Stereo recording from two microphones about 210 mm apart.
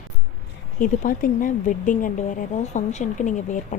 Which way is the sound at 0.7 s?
40° left (ahead or behind).